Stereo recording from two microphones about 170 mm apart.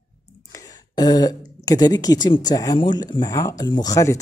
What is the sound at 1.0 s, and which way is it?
Speech, 20° left (ahead or behind).